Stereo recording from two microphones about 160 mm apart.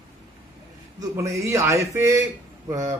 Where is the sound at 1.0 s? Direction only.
20° right (ahead or behind).